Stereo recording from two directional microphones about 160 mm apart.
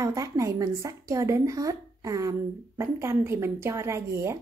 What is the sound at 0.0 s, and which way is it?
A woman's voice, 20° right (ahead or behind).